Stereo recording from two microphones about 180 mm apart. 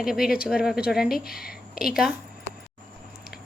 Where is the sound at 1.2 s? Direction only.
55° left (ahead or behind).